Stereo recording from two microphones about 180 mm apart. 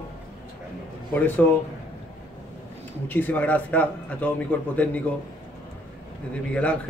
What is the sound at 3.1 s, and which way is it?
A man's voice, 10° left (ahead or behind).